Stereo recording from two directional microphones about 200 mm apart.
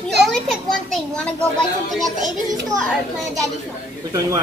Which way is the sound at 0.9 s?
Centre (ahead or behind).